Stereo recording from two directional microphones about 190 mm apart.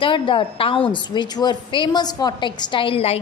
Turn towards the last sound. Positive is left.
turn(degrees=30)  # may be behind; listen again after turning